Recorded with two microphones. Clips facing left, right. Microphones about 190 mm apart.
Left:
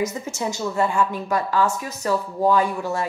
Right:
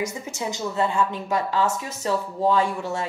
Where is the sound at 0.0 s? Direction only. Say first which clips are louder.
Left 3 dB; 15° right (ahead or behind).